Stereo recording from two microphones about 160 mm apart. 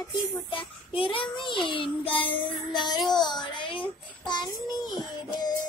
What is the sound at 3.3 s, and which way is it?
A child's voice, 30° left (ahead or behind).